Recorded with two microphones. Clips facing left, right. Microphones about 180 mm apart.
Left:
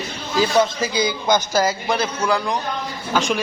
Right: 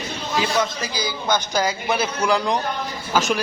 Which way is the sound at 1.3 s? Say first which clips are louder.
Left 2 dB; centre (ahead or behind).